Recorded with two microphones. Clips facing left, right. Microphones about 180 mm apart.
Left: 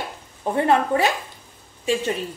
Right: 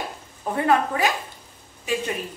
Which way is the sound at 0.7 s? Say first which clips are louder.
Left 1 dB; 25° left (ahead or behind).